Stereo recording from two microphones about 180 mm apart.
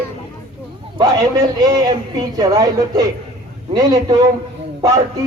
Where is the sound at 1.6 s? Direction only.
20° right (ahead or behind).